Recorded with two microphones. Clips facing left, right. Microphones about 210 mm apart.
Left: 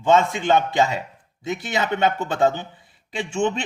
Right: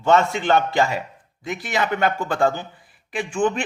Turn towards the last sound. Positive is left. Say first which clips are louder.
# right 1 dB
turn(degrees=25)  # may be behind; listen again after turning